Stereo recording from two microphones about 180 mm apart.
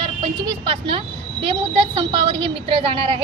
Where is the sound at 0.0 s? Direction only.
25° right (ahead or behind).